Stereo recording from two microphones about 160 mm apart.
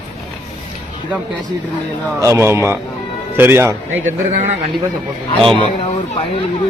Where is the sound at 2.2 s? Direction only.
15° right (ahead or behind).